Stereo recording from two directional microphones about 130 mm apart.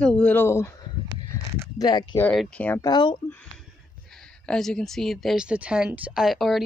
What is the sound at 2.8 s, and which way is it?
Speech, 35° left (ahead or behind).